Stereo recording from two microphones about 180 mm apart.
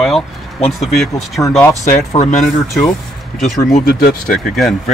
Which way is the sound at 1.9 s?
45° left (ahead or behind).